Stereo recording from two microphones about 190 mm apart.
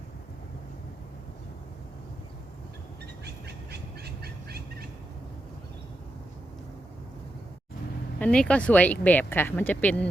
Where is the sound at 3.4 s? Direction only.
60° right (ahead or behind).